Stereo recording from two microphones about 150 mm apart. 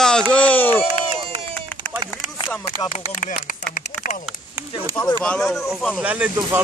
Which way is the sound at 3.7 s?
60° left (ahead or behind).